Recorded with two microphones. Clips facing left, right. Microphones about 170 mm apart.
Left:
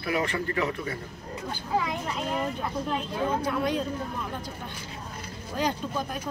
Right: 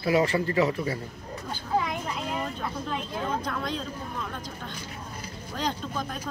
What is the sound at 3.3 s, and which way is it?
Speech, 10° left (ahead or behind).